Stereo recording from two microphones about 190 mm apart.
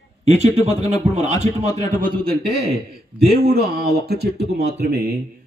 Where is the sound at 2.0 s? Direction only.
55° right (ahead or behind).